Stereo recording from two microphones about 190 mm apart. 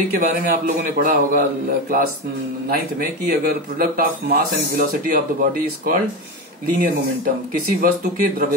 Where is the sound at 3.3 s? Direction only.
50° right (ahead or behind).